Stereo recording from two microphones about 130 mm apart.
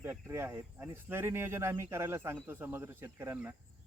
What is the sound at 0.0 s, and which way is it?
Speech, 20° right (ahead or behind).